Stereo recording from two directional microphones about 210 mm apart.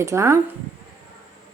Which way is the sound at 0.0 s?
15° right (ahead or behind).